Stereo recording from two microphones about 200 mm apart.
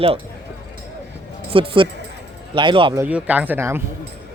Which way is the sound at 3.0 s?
5° right (ahead or behind).